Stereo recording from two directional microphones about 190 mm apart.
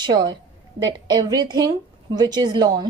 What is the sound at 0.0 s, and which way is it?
A woman's voice, 25° right (ahead or behind).